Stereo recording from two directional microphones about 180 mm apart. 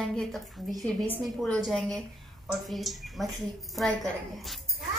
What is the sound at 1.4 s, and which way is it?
A woman's voice, 5° left (ahead or behind).